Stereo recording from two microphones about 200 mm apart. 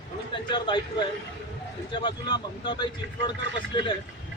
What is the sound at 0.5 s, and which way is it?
Speech, 25° left (ahead or behind).